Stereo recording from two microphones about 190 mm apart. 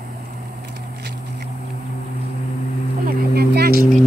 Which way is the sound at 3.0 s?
55° right (ahead or behind).